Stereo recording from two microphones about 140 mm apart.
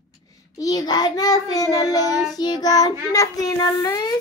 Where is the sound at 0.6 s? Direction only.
25° left (ahead or behind).